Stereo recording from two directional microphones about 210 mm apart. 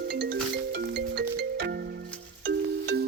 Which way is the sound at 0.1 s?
55° right (ahead or behind).